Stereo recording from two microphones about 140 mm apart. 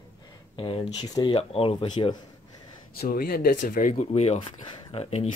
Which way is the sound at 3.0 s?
90° left.